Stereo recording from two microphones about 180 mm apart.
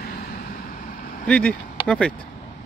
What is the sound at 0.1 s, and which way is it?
Vehicle, 55° left (ahead or behind).